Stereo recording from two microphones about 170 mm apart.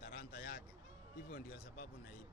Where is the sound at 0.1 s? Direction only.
65° left (ahead or behind).